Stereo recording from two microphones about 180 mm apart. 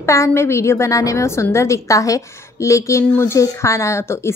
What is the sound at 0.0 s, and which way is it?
A woman's voice, 15° left (ahead or behind).